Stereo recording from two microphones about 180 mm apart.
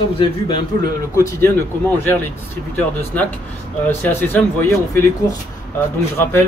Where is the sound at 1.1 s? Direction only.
15° left (ahead or behind).